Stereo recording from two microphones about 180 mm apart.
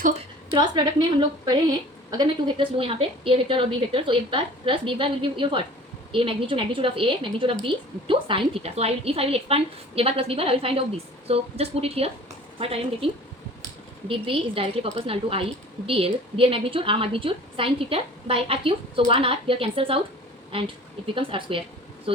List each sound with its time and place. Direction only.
0.5 s a woman's voice: 25° right (ahead or behind)
14.1 s a woman's voice: 30° right (ahead or behind)
21.2 s a woman's voice: 30° right (ahead or behind)